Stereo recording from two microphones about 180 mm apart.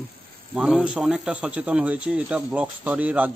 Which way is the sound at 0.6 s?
5° right (ahead or behind).